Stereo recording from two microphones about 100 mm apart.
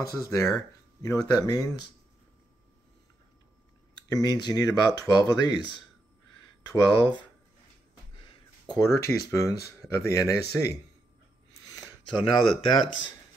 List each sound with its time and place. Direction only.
0.1 s speech: 30° left (ahead or behind)
4.1 s speech: 45° left (ahead or behind)
6.7 s speech: 45° left (ahead or behind)
8.6 s speech: 35° left (ahead or behind)
12.4 s speech: 60° left (ahead or behind)